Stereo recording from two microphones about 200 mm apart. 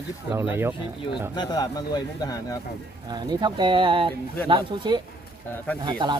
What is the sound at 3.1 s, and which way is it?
Speech, 20° right (ahead or behind).